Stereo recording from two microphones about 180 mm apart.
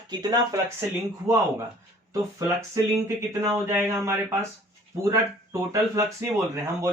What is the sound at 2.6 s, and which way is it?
Speech, 15° right (ahead or behind).